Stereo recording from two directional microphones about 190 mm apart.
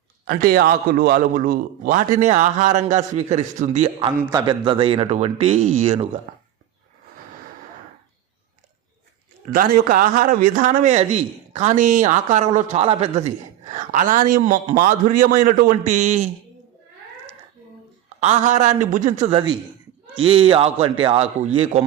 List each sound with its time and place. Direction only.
0.3 s a man's voice: 50° right (ahead or behind)
4.2 s a man's voice: 20° right (ahead or behind); by 6.1 s 35° right (ahead or behind)
9.5 s a man's voice: 50° right (ahead or behind)
18.2 s a man's voice: 35° right (ahead or behind)
19.3 s a man's voice: 25° right (ahead or behind)